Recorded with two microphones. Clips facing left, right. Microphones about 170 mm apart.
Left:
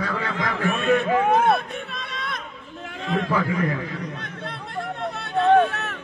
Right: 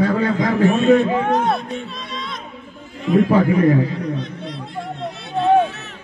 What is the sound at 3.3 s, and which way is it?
Speech, 30° right (ahead or behind).